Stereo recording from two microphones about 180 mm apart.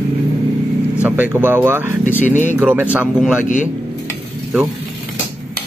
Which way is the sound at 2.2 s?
40° left (ahead or behind).